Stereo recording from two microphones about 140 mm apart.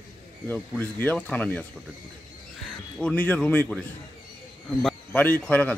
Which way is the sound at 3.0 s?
10° left (ahead or behind).